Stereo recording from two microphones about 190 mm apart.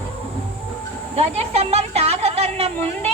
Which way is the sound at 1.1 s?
35° right (ahead or behind).